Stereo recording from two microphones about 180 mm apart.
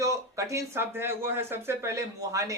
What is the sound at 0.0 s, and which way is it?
Speech, 15° right (ahead or behind).